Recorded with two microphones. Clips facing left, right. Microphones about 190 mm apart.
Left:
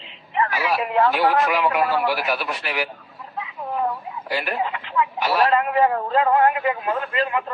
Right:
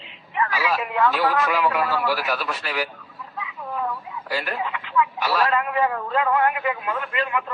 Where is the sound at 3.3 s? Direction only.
35° left (ahead or behind).